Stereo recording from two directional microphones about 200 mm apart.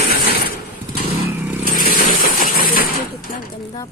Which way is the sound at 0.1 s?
50° left (ahead or behind).